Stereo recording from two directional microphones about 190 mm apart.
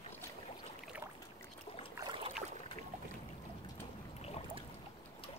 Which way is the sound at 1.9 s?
25° right (ahead or behind).